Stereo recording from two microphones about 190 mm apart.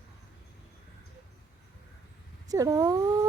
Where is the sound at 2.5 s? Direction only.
20° right (ahead or behind).